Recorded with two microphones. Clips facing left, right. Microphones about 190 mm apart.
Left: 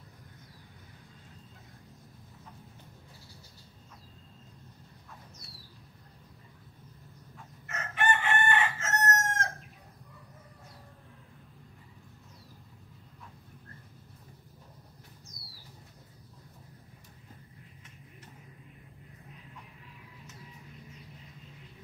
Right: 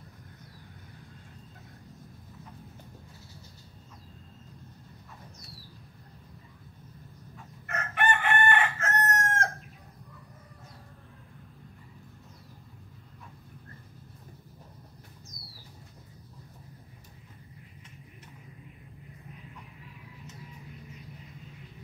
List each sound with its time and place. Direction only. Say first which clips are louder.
7.6 s chicken: right 2 dB; 55° right (ahead or behind)